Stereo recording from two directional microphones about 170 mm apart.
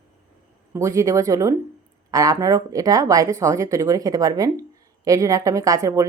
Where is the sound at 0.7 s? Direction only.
15° right (ahead or behind).